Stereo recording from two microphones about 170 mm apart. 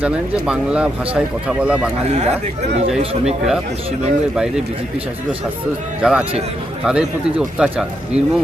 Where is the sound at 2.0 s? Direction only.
40° right (ahead or behind).